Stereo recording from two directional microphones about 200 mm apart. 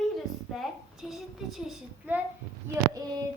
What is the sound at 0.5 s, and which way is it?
Child singing, centre (ahead or behind).